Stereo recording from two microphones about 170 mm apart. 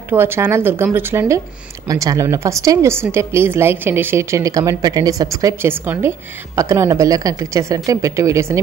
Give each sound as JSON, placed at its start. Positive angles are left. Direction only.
{"t": 0.1, "sound": "speech", "side_deg": -15}